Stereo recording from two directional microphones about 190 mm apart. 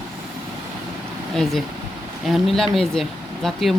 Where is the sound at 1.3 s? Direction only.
Centre (ahead or behind).